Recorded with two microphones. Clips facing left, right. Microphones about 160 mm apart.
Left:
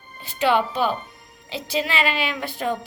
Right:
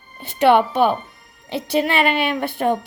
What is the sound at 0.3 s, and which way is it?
A woman's voice, 55° right (ahead or behind).